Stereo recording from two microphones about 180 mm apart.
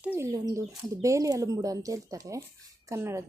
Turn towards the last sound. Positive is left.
turn(degrees=-15)  # may be behind; listen again after turning